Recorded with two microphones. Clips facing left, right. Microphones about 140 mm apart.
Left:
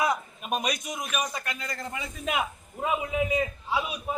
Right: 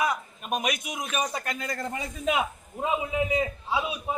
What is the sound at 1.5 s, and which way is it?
Speech, 45° right (ahead or behind).